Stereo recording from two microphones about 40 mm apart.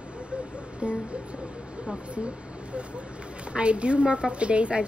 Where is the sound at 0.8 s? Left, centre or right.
Right.